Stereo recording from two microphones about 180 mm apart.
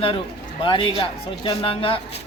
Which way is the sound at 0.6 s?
30° left (ahead or behind).